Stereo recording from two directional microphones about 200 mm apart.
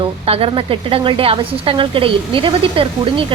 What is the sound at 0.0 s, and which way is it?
A woman's voice, 30° right (ahead or behind).